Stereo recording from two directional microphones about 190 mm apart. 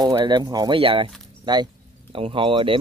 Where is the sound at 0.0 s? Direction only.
20° right (ahead or behind).